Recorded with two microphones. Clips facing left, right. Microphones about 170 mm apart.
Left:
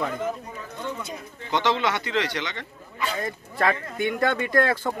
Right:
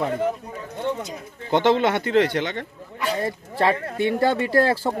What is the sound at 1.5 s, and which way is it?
Speech, 50° right (ahead or behind).